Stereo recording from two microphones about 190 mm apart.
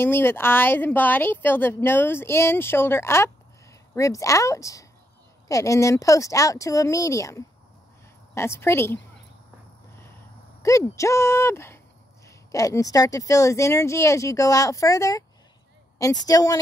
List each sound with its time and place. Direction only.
0.0 s speech: 10° left (ahead or behind)
10.6 s speech: 15° left (ahead or behind)